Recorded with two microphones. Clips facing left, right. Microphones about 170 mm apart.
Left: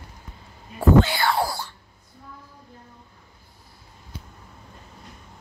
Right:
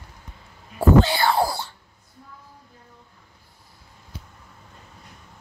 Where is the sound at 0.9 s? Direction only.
30° right (ahead or behind).